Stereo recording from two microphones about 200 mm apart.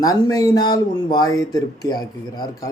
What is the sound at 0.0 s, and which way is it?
Speech, 20° left (ahead or behind).